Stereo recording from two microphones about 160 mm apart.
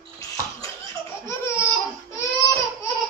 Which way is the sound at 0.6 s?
20° left (ahead or behind).